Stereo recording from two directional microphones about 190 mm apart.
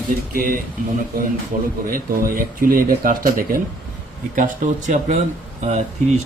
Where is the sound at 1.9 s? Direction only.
45° right (ahead or behind).